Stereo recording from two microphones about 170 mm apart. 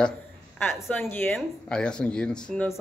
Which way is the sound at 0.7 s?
15° left (ahead or behind).